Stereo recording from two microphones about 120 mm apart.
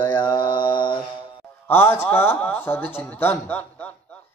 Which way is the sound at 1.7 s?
20° left (ahead or behind).